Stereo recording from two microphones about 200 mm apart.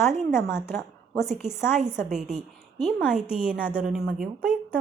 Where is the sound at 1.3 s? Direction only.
5° right (ahead or behind).